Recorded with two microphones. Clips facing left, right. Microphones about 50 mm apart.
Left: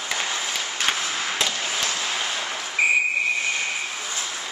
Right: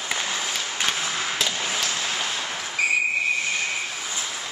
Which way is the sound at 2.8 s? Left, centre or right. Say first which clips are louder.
Left 3 dB; centre.